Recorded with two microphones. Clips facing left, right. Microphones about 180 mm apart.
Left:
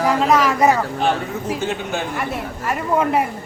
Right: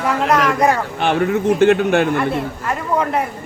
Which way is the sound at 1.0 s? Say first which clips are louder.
Right 4 dB; 70° right (ahead or behind).